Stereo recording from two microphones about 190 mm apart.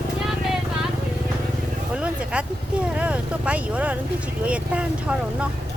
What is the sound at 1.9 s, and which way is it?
Speech, 5° right (ahead or behind).